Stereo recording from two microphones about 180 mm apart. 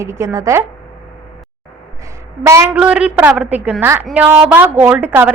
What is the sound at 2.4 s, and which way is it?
A woman's voice, 15° right (ahead or behind).